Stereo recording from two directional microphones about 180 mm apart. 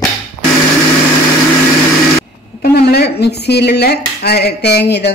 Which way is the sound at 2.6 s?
60° left (ahead or behind).